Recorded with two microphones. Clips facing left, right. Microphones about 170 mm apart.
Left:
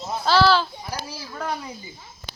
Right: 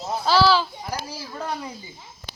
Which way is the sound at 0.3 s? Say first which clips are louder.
Left 1 dB; 5° right (ahead or behind).